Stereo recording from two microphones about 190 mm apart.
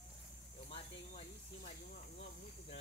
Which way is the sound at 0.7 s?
40° left (ahead or behind).